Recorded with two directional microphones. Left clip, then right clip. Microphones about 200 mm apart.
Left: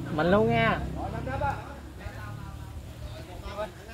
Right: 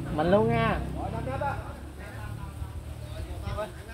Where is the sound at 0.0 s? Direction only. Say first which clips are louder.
Even; 25° left (ahead or behind).